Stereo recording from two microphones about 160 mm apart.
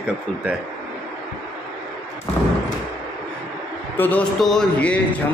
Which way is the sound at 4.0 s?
10° left (ahead or behind).